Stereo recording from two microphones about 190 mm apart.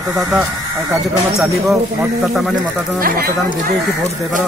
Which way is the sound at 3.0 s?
50° right (ahead or behind).